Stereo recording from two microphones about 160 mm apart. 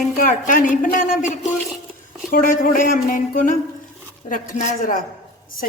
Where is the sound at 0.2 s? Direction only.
60° left (ahead or behind).